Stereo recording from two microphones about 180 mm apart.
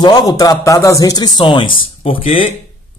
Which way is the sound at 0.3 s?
20° left (ahead or behind).